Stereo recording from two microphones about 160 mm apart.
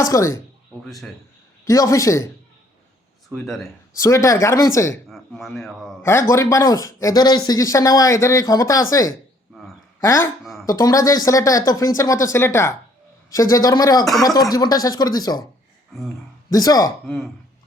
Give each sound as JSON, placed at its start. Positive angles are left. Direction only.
{"t": 0.0, "sound": "speech", "side_deg": 20}
{"t": 0.9, "sound": "a man's voice", "side_deg": 0}
{"t": 1.6, "sound": "speech", "side_deg": 20}
{"t": 3.2, "sound": "speech", "side_deg": 0}
{"t": 3.9, "sound": "speech", "side_deg": 20}
{"t": 5.0, "sound": "speech", "side_deg": 0}
{"t": 6.0, "sound": "speech", "side_deg": 15}
{"t": 10.4, "sound": "a sound", "side_deg": 0}
{"t": 10.7, "sound": "speech", "side_deg": 20}
{"t": 16.5, "sound": "speech", "side_deg": 20}